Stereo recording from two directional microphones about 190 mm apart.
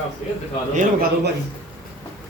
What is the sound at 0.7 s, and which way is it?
Speech, 50° right (ahead or behind).